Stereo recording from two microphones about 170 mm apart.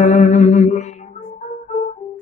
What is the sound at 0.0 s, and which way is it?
Mantra, 45° left (ahead or behind).